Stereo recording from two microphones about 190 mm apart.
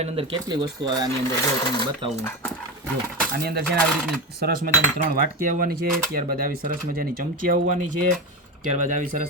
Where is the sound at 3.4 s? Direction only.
55° right (ahead or behind).